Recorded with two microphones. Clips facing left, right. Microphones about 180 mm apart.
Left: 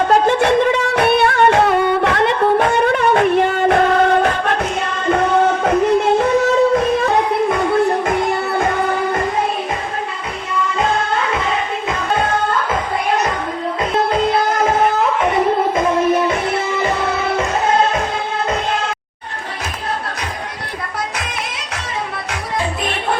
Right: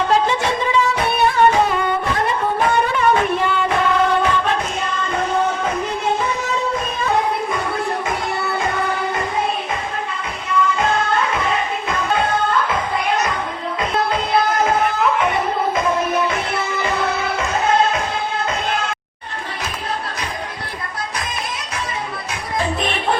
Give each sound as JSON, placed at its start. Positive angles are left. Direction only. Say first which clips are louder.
{"t": 0.1, "sound": "music", "louder": "left 5 dB", "side_deg": 55}
{"t": 2.8, "sound": "music", "louder": "left 4 dB", "side_deg": 60}